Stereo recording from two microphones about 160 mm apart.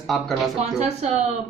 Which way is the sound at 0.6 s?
45° right (ahead or behind).